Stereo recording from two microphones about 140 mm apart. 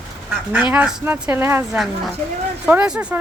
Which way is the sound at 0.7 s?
10° right (ahead or behind).